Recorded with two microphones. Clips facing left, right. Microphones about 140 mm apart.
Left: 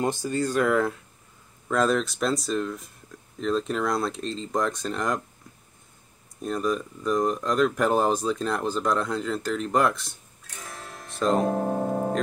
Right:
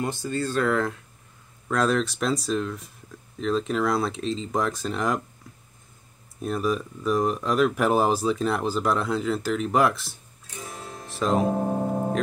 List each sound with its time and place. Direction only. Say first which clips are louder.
0.0 s speech: left 2 dB; 20° left (ahead or behind); by 5.2 s centre (ahead or behind)
6.4 s speech: right 1 dB; 5° right (ahead or behind)